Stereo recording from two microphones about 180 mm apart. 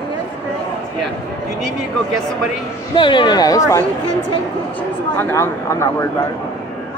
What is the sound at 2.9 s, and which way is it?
Speech, 25° left (ahead or behind).